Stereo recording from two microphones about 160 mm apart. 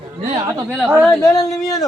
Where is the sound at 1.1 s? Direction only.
20° left (ahead or behind).